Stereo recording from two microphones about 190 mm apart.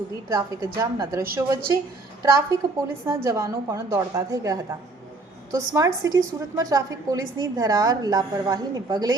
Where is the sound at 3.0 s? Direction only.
15° right (ahead or behind).